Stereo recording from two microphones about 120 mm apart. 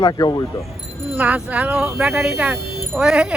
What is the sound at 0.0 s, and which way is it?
Speech, 35° left (ahead or behind).